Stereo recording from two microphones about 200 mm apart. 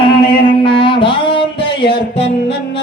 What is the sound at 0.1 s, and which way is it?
Music, 25° left (ahead or behind).